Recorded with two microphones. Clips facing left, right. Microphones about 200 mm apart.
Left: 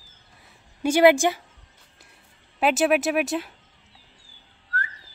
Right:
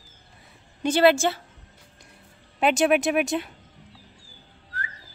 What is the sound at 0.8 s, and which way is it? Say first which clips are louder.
Speech: left 2 dB; 15° left (ahead or behind).